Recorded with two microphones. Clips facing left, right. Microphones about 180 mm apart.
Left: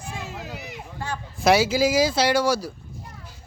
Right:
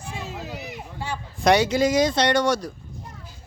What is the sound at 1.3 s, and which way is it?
Speech, 5° left (ahead or behind).